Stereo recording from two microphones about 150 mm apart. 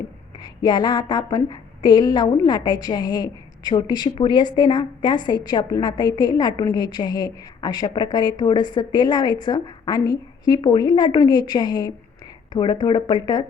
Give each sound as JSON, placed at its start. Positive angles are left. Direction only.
{"t": 0.4, "sound": "a woman's voice", "side_deg": 25}